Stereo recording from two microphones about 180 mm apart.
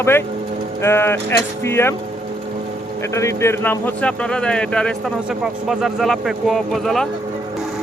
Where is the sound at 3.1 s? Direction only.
15° left (ahead or behind).